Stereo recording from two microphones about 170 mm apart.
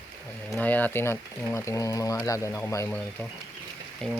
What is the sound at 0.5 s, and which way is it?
Speech, 10° left (ahead or behind).